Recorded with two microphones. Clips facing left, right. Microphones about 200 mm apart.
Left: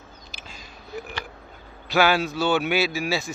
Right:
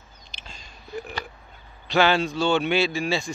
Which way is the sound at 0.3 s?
5° left (ahead or behind).